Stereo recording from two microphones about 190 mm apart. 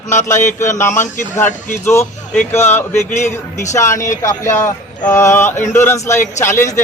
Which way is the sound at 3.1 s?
40° left (ahead or behind).